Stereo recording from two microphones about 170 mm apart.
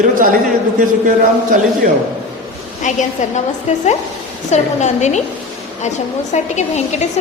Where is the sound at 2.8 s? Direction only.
45° left (ahead or behind).